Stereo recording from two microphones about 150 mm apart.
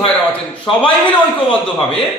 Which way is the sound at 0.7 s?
35° left (ahead or behind).